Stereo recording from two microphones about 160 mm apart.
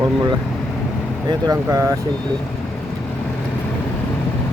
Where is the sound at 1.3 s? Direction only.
25° right (ahead or behind).